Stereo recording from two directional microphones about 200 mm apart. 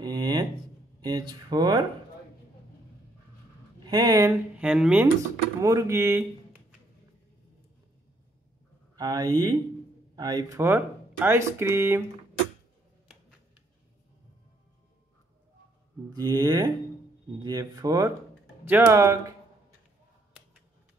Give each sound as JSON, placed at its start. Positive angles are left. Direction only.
{"t": 0.0, "sound": "a sound", "side_deg": -20}
{"t": 1.0, "sound": "speech", "side_deg": -20}
{"t": 3.8, "sound": "speech", "side_deg": -20}
{"t": 4.6, "sound": "speech", "side_deg": -5}
{"t": 5.6, "sound": "speech", "side_deg": -15}
{"t": 8.9, "sound": "speech", "side_deg": -20}
{"t": 16.2, "sound": "speech", "side_deg": -15}